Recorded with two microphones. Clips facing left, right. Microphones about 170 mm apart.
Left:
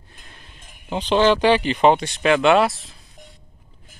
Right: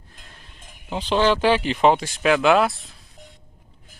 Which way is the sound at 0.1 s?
Centre (ahead or behind).